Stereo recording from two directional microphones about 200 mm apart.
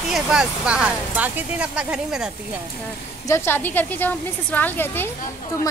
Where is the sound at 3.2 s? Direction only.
10° left (ahead or behind).